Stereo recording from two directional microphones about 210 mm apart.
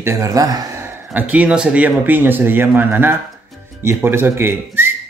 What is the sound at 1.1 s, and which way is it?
Speech, 5° right (ahead or behind).